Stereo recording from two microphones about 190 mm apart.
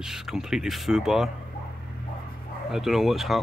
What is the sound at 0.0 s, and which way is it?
Speech, 5° right (ahead or behind).